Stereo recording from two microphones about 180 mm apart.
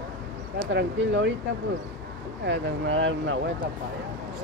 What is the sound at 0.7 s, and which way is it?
Speech, 85° right.